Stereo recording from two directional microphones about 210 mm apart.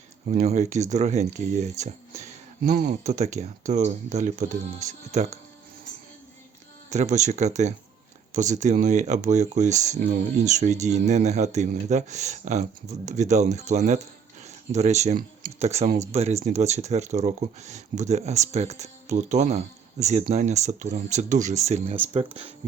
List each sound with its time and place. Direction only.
0.3 s speech: 35° right (ahead or behind)
2.6 s speech: 45° right (ahead or behind)
3.0 s speech: 35° right (ahead or behind)
6.9 s speech: 35° right (ahead or behind)